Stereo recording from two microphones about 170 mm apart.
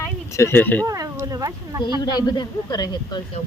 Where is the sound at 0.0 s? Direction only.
15° left (ahead or behind).